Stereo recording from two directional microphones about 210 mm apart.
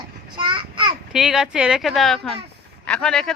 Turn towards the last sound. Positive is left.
turn(degrees=5)  # may be behind; listen again after turning